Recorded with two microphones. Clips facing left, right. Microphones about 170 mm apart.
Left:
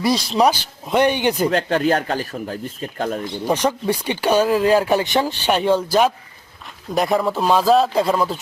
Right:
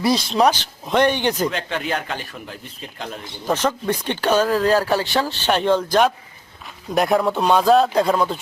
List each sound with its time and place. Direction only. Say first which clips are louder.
0.0 s speech: even; centre (ahead or behind)
1.5 s speech: left 7 dB; 40° left (ahead or behind)
3.4 s speech: left 1 dB; 15° left (ahead or behind)